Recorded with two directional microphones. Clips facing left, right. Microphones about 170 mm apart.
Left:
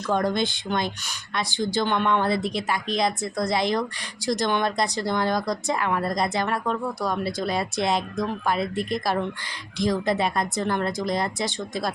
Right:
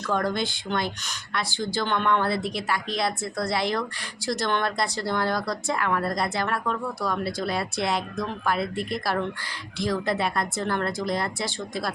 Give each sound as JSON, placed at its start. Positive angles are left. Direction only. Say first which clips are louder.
{"t": 0.1, "sound": "speech", "louder": "left 3 dB", "side_deg": 20}